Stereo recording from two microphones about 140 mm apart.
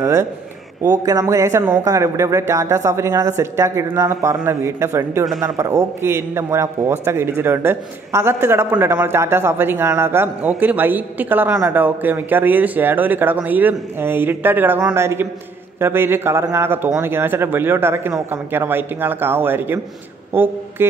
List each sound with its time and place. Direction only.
0.0 s a man's voice: 20° right (ahead or behind)